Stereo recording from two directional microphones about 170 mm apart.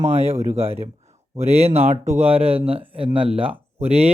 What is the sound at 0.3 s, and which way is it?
Speech, 15° right (ahead or behind).